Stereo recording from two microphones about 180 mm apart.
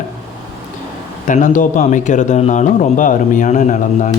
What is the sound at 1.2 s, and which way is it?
Speech, 45° left (ahead or behind).